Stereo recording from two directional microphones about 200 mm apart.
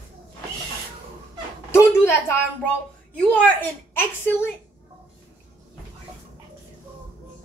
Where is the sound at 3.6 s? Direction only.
10° left (ahead or behind).